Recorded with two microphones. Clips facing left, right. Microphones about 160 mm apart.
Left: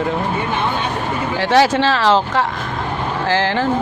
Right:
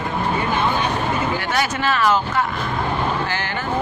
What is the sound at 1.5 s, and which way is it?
Speech, 90° left.